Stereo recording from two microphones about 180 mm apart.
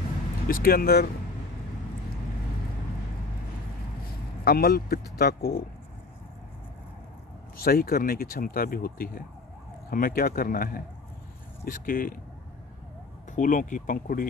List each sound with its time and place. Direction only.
0.5 s speech: 55° left (ahead or behind)
4.5 s speech: 55° left (ahead or behind)
7.5 s speech: 55° left (ahead or behind)
13.3 s speech: 45° left (ahead or behind)